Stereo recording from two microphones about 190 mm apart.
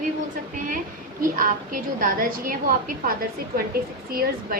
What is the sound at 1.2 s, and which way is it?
A woman's voice, 45° right (ahead or behind).